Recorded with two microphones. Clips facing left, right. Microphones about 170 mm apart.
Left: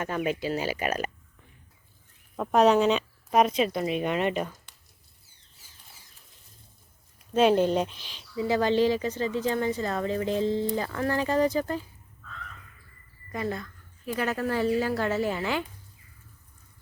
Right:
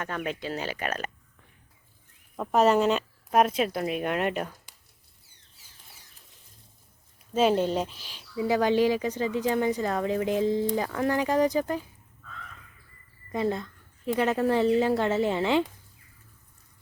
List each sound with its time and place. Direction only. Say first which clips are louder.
0.0 s speech: left 4 dB; 10° left (ahead or behind)
2.3 s speech: left 1 dB; centre (ahead or behind)
7.3 s speech: left 2 dB; centre (ahead or behind)
13.3 s a woman's voice: right 4 dB; 20° right (ahead or behind)